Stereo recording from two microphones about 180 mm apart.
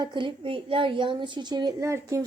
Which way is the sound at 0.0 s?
25° right (ahead or behind).